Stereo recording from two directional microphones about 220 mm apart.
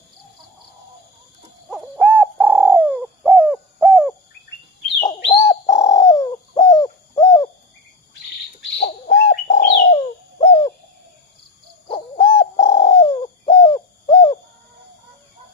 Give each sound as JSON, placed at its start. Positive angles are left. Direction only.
{"t": 1.7, "sound": "bird", "side_deg": -5}
{"t": 4.9, "sound": "bird", "side_deg": 20}
{"t": 8.8, "sound": "bird", "side_deg": 30}
{"t": 10.4, "sound": "owl", "side_deg": 25}
{"t": 11.9, "sound": "bird", "side_deg": 20}